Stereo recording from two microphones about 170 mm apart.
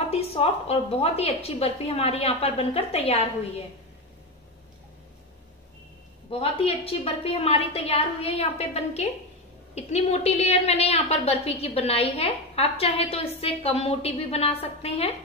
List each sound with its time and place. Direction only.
0.1 s a woman's voice: 35° left (ahead or behind)
6.3 s a woman's voice: 35° left (ahead or behind)